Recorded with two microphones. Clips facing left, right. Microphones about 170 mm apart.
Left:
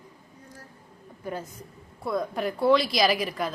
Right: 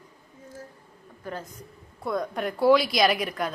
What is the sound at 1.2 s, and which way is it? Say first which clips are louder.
A woman's voice: left 2 dB; 10° left (ahead or behind).